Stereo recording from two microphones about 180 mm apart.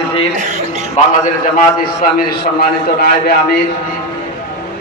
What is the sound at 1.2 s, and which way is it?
A man's voice, 45° left (ahead or behind).